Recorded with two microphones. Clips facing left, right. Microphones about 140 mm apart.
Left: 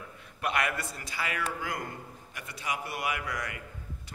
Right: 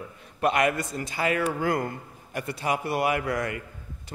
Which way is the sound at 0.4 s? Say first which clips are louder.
Right 7 dB; 25° right (ahead or behind).